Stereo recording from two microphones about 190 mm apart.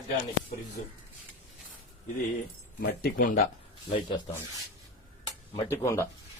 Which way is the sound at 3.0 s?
45° left (ahead or behind).